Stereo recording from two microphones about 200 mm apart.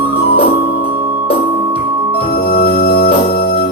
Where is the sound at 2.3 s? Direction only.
50° left (ahead or behind).